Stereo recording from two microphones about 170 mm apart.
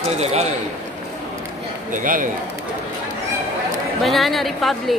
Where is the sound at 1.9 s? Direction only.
50° right (ahead or behind).